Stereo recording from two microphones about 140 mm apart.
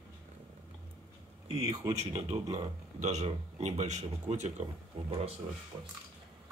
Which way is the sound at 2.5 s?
55° right (ahead or behind).